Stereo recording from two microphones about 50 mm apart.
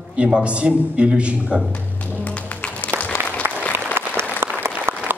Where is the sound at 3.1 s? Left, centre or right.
Left.